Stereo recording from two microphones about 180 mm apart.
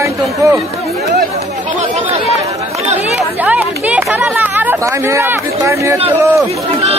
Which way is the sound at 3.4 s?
10° right (ahead or behind).